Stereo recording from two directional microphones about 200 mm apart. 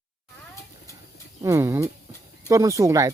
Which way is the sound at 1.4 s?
15° right (ahead or behind).